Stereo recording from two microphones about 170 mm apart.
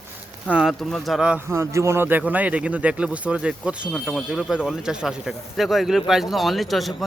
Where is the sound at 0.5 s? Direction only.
Centre (ahead or behind).